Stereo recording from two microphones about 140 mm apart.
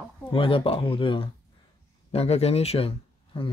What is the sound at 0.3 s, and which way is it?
Speech, 40° left (ahead or behind).